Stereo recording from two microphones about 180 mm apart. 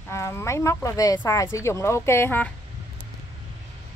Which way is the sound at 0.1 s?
15° left (ahead or behind).